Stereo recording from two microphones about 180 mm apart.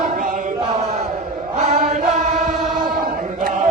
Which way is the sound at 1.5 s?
40° right (ahead or behind).